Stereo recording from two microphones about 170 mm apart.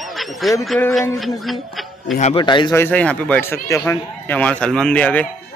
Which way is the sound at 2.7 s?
10° left (ahead or behind).